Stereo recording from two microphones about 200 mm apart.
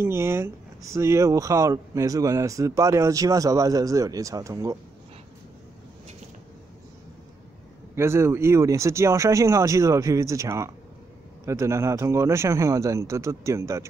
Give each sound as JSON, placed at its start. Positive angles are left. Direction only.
{"t": 0.0, "sound": "speech", "side_deg": -15}
{"t": 7.9, "sound": "speech", "side_deg": -15}